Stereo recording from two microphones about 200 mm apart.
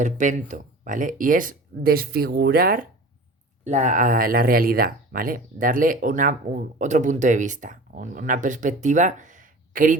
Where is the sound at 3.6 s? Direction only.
35° right (ahead or behind).